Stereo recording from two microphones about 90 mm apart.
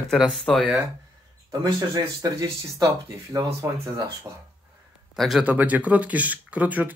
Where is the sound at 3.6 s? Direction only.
30° right (ahead or behind).